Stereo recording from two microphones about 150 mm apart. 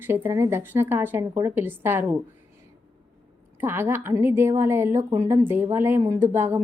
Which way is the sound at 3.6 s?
15° right (ahead or behind).